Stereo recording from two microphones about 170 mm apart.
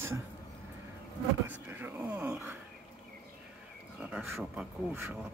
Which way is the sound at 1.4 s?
10° right (ahead or behind).